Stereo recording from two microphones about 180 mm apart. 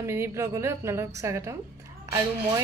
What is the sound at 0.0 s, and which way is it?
A woman's voice, 15° right (ahead or behind).